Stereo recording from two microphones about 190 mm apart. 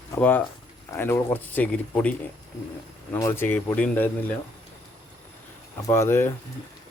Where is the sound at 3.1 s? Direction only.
10° left (ahead or behind).